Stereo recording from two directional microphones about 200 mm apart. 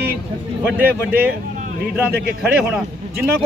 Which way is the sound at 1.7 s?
50° right (ahead or behind).